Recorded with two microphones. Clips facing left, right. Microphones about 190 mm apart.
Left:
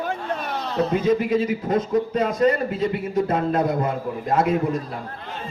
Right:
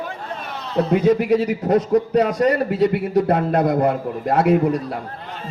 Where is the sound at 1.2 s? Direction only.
70° right (ahead or behind).